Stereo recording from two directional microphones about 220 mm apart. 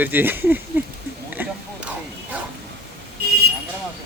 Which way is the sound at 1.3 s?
10° right (ahead or behind).